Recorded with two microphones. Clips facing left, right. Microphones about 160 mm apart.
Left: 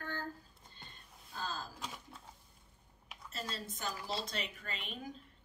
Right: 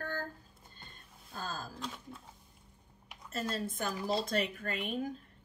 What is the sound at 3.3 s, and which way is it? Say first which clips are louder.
Speech: right 8 dB; 50° right (ahead or behind).